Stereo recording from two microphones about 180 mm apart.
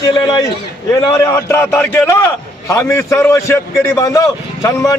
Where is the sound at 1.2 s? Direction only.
15° left (ahead or behind).